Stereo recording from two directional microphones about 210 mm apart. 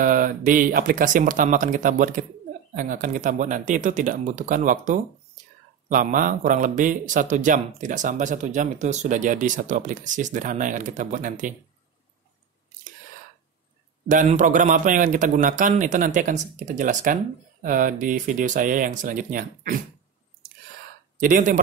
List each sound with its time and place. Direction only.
0.0 s a man's voice: 40° right (ahead or behind)
14.0 s a man's voice: 40° right (ahead or behind)
21.2 s a man's voice: 40° right (ahead or behind)